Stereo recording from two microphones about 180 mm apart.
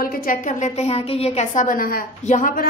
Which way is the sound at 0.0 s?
55° left (ahead or behind).